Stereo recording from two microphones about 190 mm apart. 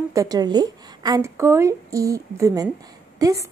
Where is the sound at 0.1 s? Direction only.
20° right (ahead or behind).